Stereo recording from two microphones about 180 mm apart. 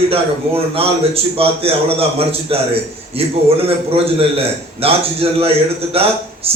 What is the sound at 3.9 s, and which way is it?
A man's voice, 35° right (ahead or behind).